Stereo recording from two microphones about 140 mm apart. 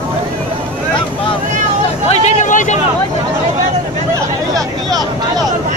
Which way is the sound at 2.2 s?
60° left (ahead or behind).